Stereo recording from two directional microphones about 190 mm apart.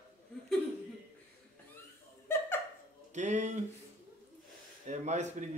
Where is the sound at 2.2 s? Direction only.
10° left (ahead or behind).